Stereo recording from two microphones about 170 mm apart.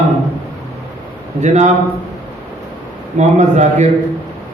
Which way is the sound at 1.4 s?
45° right (ahead or behind).